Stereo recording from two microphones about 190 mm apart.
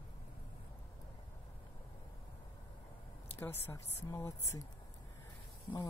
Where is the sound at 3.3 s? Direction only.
10° left (ahead or behind).